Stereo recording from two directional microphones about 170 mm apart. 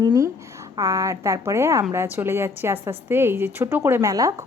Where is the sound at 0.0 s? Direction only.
25° right (ahead or behind).